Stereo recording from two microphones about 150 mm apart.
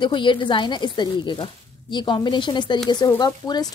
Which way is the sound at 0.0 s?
35° left (ahead or behind).